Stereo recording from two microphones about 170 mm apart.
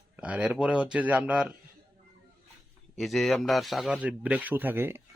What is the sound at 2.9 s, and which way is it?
A man's voice, centre (ahead or behind).